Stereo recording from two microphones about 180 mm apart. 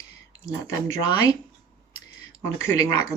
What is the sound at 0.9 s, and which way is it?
Speech, 20° left (ahead or behind).